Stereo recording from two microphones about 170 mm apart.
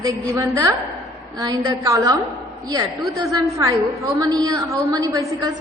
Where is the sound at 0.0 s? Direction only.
20° right (ahead or behind).